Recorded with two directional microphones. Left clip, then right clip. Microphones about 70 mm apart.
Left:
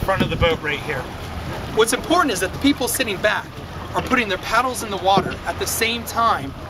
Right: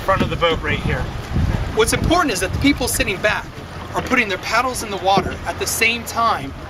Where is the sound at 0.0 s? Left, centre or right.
Left.